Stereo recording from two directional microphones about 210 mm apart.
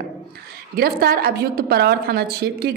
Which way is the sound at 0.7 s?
45° right (ahead or behind).